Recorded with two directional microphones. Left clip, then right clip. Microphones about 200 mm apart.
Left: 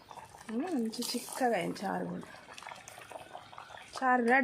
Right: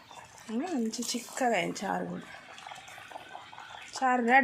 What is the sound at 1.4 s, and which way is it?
Speech, 15° right (ahead or behind).